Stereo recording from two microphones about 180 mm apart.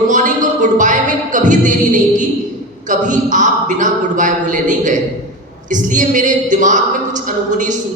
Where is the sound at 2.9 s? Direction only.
45° right (ahead or behind).